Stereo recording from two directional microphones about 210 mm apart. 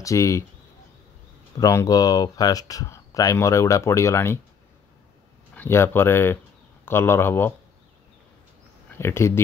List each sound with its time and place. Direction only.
0.0 s speech: 15° left (ahead or behind)
1.6 s speech: 15° left (ahead or behind)
5.5 s speech: 10° left (ahead or behind)
8.9 s speech: 10° left (ahead or behind)